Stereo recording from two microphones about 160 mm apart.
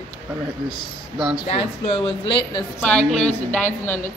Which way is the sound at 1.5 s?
35° left (ahead or behind).